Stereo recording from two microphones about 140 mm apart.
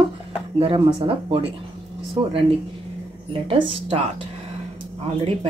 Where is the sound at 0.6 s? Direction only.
40° right (ahead or behind).